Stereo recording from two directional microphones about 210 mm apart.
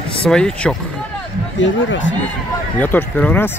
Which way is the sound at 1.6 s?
60° left (ahead or behind).